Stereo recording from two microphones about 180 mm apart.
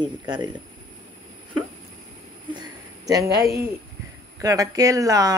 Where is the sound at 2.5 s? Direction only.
20° right (ahead or behind).